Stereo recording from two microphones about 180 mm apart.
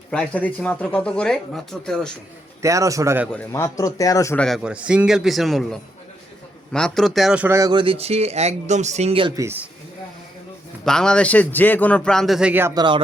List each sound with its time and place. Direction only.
0.1 s speech: 5° left (ahead or behind)
2.6 s a man's voice: 15° right (ahead or behind)
3.5 s a man's voice: 15° left (ahead or behind)
4.4 s speech: centre (ahead or behind); by 9.4 s 30° right (ahead or behind)
9.4 s a man's voice: 10° right (ahead or behind)
10.8 s speech: 5° left (ahead or behind); by 12.8 s 15° right (ahead or behind)